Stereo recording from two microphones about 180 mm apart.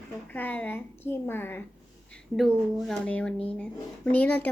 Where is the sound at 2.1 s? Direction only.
Centre (ahead or behind).